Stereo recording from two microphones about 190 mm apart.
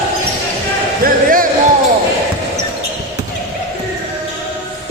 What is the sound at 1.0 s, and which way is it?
Music, 50° right (ahead or behind).